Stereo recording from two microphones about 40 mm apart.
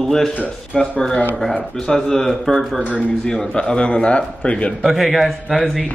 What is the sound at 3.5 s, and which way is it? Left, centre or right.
A man's voice, left.